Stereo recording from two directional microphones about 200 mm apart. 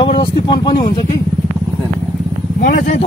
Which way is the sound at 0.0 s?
25° left (ahead or behind).